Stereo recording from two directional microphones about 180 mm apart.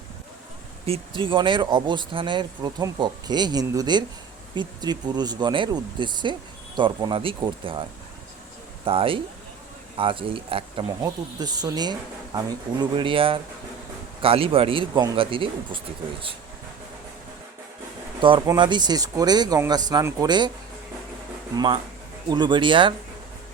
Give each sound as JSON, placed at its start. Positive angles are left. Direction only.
{"t": 0.9, "sound": "speech", "side_deg": -30}
{"t": 18.2, "sound": "speech", "side_deg": -25}
{"t": 21.5, "sound": "speech", "side_deg": -25}